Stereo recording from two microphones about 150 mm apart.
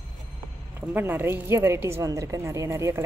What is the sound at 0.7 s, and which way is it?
A woman's voice, 15° right (ahead or behind).